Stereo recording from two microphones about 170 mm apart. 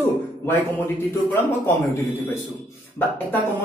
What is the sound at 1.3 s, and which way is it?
A man's voice, 10° left (ahead or behind).